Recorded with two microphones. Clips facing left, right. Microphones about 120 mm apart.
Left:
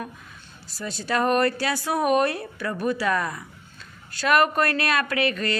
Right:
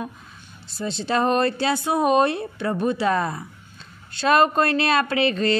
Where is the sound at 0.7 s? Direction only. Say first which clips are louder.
Right 3 dB; 25° right (ahead or behind).